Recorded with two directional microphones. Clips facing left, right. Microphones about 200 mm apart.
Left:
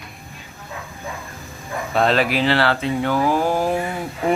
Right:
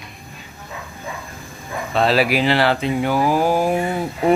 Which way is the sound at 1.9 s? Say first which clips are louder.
Right 1 dB; 5° right (ahead or behind).